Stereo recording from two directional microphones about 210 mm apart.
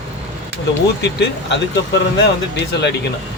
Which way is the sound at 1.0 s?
55° left (ahead or behind).